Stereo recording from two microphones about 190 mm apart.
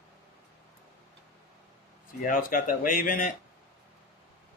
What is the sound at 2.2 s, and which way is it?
Speech, 45° left (ahead or behind).